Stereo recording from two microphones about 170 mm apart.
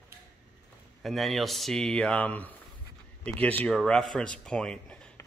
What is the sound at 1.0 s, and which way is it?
Speech, centre (ahead or behind).